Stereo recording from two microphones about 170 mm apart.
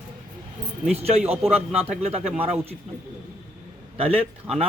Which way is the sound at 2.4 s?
35° right (ahead or behind).